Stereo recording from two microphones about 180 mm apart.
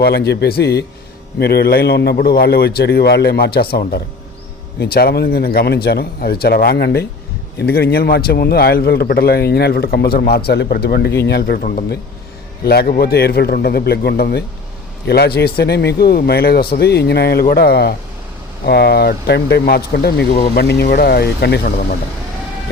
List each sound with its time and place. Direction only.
0.0 s a man's voice: 65° left (ahead or behind)